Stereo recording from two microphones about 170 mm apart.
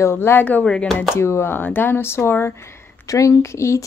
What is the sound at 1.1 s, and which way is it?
Speech, 15° left (ahead or behind).